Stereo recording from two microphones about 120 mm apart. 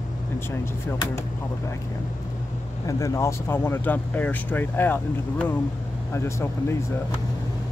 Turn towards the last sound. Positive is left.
turn(degrees=20)  # may be behind; listen again after turning